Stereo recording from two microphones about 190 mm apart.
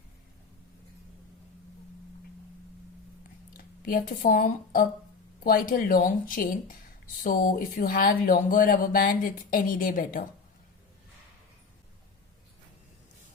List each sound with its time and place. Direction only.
3.6 s speech: 45° left (ahead or behind)